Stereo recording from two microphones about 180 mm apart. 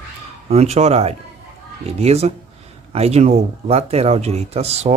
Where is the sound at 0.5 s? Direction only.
35° right (ahead or behind).